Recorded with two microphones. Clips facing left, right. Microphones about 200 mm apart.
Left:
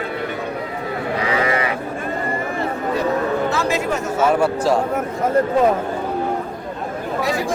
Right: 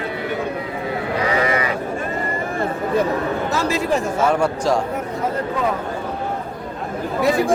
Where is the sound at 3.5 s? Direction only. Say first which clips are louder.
Left 1 dB; 40° right (ahead or behind).